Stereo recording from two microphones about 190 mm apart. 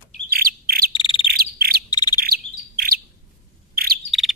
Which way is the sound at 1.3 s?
55° right (ahead or behind).